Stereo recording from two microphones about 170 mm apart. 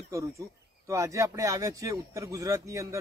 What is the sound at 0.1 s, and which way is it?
Speech, 20° right (ahead or behind).